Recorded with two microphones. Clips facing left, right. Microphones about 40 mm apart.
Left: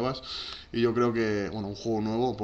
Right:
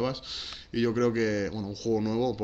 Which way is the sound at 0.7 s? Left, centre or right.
Centre.